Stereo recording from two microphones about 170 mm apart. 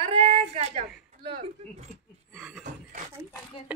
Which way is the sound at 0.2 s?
50° right (ahead or behind).